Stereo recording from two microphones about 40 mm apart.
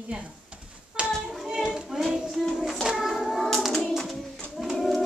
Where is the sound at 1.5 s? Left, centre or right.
Centre.